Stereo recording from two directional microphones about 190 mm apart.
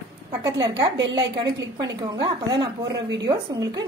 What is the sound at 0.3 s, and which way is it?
A woman's voice, 20° right (ahead or behind).